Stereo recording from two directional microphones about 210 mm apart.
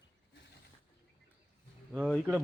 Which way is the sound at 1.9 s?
Centre (ahead or behind).